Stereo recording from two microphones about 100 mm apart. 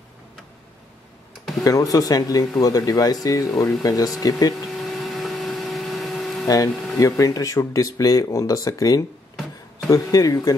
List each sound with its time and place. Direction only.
1.6 s speech: 35° left (ahead or behind)
4.7 s a sound: centre (ahead or behind)
6.4 s speech: 40° left (ahead or behind)